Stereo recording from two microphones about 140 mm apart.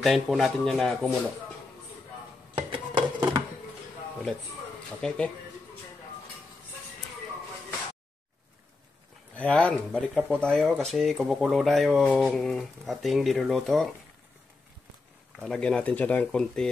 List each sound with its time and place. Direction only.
0.0 s speech: centre (ahead or behind)
2.5 s a sound: 35° right (ahead or behind)
5.0 s speech: 5° left (ahead or behind)
9.4 s speech: 10° left (ahead or behind)
15.4 s speech: 5° left (ahead or behind)